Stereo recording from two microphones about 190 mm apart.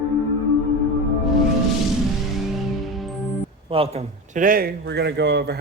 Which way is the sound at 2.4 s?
Centre (ahead or behind).